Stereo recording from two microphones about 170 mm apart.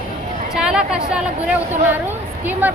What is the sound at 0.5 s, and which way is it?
Chatter, 5° right (ahead or behind).